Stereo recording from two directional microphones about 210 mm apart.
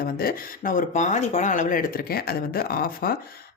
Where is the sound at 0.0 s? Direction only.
45° left (ahead or behind).